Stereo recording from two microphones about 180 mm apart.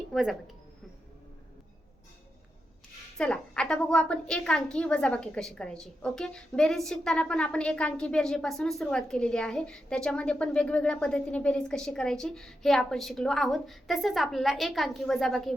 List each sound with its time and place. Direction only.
0.1 s speech: centre (ahead or behind)
3.2 s a woman's voice: 5° left (ahead or behind)